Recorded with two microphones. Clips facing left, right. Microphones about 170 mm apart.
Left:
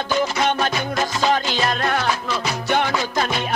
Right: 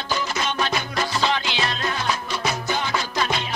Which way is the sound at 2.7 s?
60° left (ahead or behind).